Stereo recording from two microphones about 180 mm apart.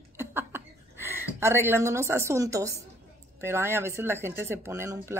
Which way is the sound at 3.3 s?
15° right (ahead or behind).